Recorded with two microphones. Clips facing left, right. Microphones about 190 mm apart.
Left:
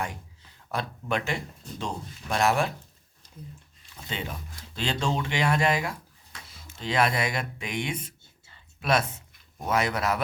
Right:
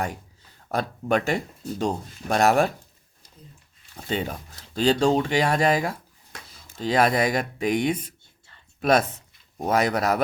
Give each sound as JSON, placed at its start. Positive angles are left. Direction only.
{"t": 0.7, "sound": "speech", "side_deg": -45}
{"t": 4.1, "sound": "speech", "side_deg": -40}